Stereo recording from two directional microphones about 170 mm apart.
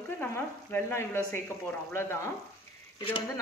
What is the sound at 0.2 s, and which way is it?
A woman's voice, 10° left (ahead or behind).